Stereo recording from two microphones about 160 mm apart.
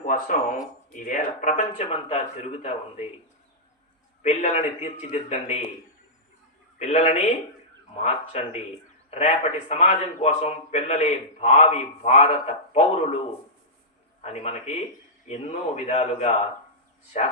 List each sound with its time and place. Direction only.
0.0 s a man's voice: 55° left (ahead or behind)
1.9 s a man's voice: 40° left (ahead or behind)
4.2 s a man's voice: 45° left (ahead or behind)
6.7 s a man's voice: 45° left (ahead or behind)
14.2 s a man's voice: 45° left (ahead or behind)